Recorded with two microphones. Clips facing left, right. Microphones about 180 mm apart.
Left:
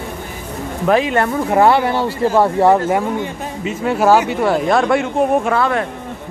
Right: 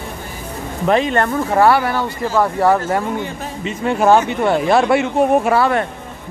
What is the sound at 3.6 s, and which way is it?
Speech, 5° left (ahead or behind).